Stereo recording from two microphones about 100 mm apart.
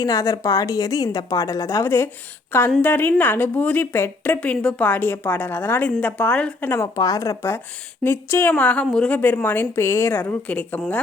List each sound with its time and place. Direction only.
0.0 s a woman's voice: 35° left (ahead or behind); by 6.7 s 15° left (ahead or behind)
6.7 s a woman's voice: 40° left (ahead or behind); by 10.8 s 10° left (ahead or behind)